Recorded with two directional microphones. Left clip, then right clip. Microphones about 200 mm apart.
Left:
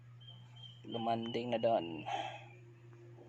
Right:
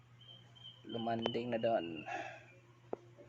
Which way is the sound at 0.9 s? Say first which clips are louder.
Left 1 dB; 5° left (ahead or behind).